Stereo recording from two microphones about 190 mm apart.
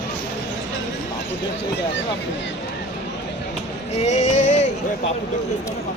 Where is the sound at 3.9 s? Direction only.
35° left (ahead or behind).